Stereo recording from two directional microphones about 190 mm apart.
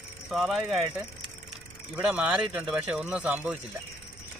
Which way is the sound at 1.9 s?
5° right (ahead or behind).